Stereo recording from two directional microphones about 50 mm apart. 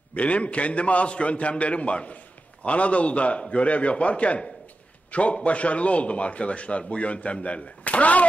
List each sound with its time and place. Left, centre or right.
0.1 s a man's voice: left